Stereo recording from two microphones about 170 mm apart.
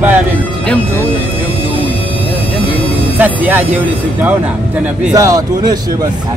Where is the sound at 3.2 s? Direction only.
10° right (ahead or behind).